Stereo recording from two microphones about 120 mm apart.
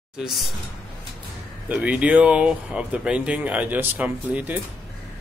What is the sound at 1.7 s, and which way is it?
Speech, 10° right (ahead or behind).